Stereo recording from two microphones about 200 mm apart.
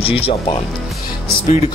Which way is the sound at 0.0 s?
30° left (ahead or behind).